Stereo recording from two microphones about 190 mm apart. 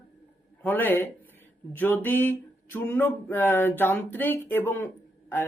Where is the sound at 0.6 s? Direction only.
10° left (ahead or behind).